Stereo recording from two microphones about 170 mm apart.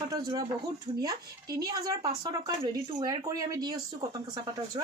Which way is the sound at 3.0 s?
20° right (ahead or behind).